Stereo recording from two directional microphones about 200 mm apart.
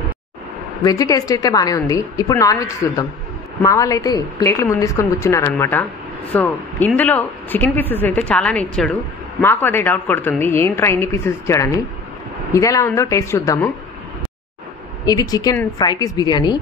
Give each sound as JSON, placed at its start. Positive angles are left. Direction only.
{"t": 0.8, "sound": "speech", "side_deg": 15}
{"t": 15.0, "sound": "a woman's voice", "side_deg": 20}